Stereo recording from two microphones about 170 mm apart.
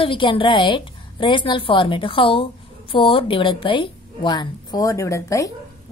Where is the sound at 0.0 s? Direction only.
30° left (ahead or behind).